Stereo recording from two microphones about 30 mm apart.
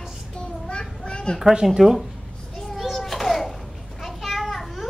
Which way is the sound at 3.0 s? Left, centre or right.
Centre.